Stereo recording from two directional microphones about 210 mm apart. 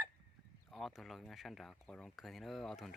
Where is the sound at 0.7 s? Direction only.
Centre (ahead or behind).